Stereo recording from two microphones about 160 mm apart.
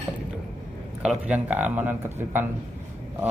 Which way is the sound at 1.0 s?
5° right (ahead or behind).